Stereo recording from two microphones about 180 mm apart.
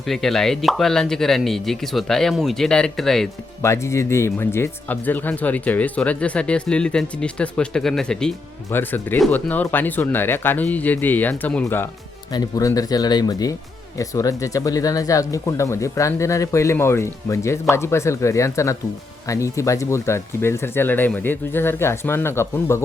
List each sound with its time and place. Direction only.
0.1 s speech: centre (ahead or behind)
3.6 s speech: 15° left (ahead or behind)